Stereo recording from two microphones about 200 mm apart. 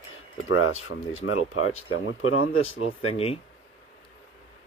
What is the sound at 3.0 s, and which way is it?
Speech, 30° left (ahead or behind).